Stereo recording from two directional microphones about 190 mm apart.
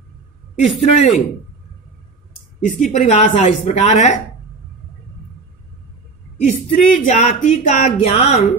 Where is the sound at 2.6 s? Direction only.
40° left (ahead or behind).